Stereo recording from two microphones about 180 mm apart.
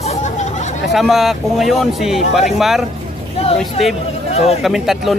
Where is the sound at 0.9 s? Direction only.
Centre (ahead or behind).